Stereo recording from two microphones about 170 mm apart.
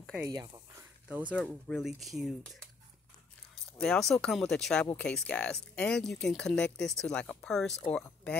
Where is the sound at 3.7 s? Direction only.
5° left (ahead or behind).